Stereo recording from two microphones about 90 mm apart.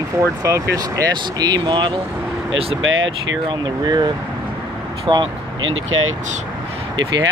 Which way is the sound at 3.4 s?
55° right (ahead or behind).